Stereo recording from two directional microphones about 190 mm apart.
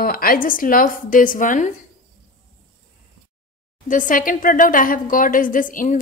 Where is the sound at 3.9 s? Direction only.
45° left (ahead or behind).